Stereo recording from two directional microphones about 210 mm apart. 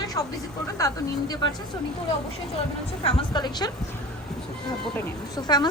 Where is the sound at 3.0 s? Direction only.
25° left (ahead or behind).